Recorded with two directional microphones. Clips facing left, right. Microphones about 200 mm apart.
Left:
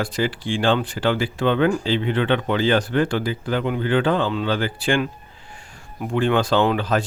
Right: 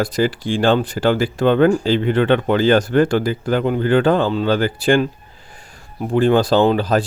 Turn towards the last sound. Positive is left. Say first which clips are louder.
# right 4 dB
turn(degrees=-35)  # may be behind; listen again after turning